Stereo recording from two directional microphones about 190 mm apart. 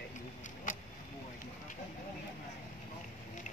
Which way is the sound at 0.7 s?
45° left (ahead or behind).